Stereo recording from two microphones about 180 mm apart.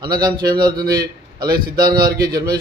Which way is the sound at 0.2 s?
25° right (ahead or behind).